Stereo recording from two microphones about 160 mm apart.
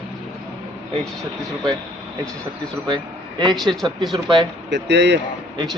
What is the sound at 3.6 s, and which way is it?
Speech, centre (ahead or behind).